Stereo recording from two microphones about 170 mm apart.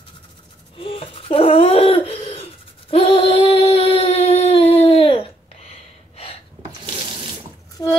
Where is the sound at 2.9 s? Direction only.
35° left (ahead or behind).